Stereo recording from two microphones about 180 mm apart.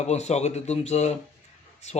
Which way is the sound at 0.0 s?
40° left (ahead or behind).